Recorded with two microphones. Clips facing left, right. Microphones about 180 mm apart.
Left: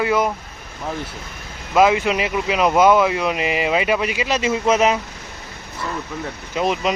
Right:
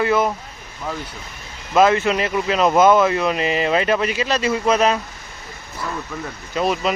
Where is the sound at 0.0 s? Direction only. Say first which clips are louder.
Right 1 dB; 10° left (ahead or behind).